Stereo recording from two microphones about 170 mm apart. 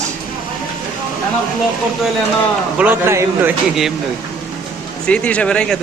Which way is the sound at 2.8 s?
10° right (ahead or behind).